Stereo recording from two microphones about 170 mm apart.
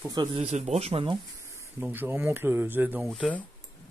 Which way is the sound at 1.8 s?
10° right (ahead or behind).